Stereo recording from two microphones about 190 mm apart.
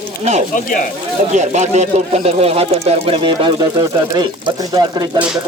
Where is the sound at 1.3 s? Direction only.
40° right (ahead or behind).